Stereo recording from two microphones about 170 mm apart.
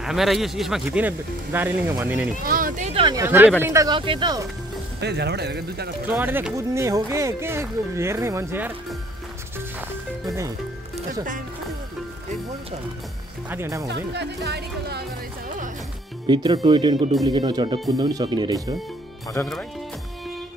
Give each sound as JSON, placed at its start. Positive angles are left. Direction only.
{"t": 0.0, "sound": "speech", "side_deg": 0}
{"t": 2.4, "sound": "speech", "side_deg": -55}
{"t": 2.9, "sound": "a sound", "side_deg": -30}
{"t": 3.2, "sound": "speech", "side_deg": -15}
{"t": 5.0, "sound": "speech", "side_deg": -75}
{"t": 6.0, "sound": "speech", "side_deg": -10}
{"t": 13.5, "sound": "speech", "side_deg": -15}
{"t": 13.8, "sound": "speech", "side_deg": -90}
{"t": 16.3, "sound": "speech", "side_deg": -25}
{"t": 19.4, "sound": "speech", "side_deg": 15}